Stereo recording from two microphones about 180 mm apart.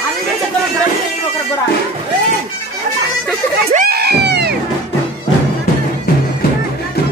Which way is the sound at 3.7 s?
60° right (ahead or behind).